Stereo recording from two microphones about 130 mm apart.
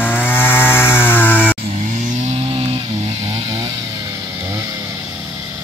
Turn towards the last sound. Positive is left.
turn(degrees=-30)  # may be behind; listen again after turning